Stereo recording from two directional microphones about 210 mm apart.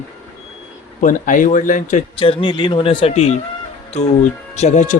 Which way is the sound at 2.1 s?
25° left (ahead or behind).